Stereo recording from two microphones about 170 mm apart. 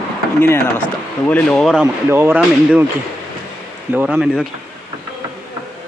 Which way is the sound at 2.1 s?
15° right (ahead or behind).